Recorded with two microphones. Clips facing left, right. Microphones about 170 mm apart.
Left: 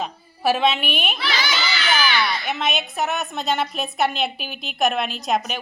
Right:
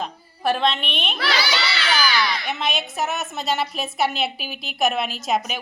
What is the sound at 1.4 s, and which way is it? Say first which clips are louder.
Crowd: right 1 dB; 35° right (ahead or behind).